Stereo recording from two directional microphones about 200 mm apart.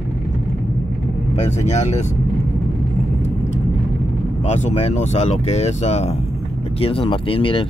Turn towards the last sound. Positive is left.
turn(degrees=25)  # may be behind; listen again after turning